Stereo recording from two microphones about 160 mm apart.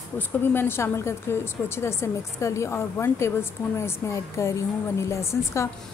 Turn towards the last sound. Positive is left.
turn(degrees=15)  # may be behind; listen again after turning